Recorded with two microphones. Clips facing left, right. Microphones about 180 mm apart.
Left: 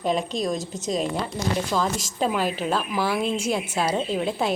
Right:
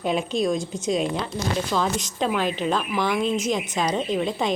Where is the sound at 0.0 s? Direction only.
Centre (ahead or behind).